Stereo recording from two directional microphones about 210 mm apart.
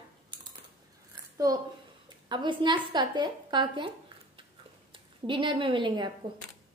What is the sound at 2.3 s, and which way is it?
A woman's voice, 25° right (ahead or behind).